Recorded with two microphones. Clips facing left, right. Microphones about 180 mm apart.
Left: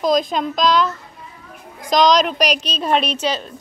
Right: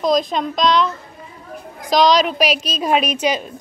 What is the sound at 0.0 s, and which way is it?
A woman's voice, centre (ahead or behind).